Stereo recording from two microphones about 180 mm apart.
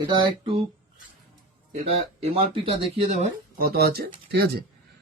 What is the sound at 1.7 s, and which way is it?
Speech, 35° right (ahead or behind).